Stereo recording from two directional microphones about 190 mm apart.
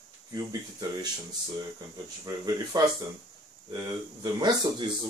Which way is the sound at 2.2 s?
20° right (ahead or behind).